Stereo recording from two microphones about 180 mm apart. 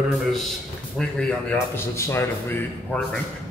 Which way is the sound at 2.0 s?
15° left (ahead or behind).